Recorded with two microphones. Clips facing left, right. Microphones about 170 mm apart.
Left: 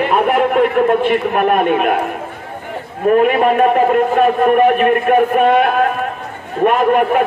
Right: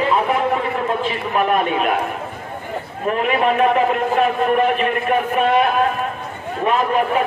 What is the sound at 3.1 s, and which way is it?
A man's voice, 50° left (ahead or behind).